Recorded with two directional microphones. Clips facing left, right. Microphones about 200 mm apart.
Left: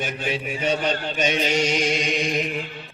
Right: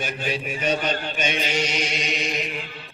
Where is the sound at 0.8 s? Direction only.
35° left (ahead or behind).